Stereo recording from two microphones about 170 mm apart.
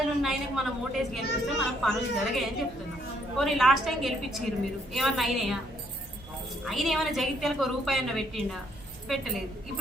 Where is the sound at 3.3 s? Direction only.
Centre (ahead or behind).